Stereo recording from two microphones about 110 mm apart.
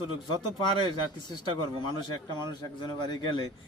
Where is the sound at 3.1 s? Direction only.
45° left (ahead or behind).